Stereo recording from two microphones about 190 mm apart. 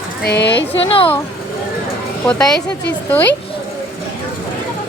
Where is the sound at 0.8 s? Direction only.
30° left (ahead or behind).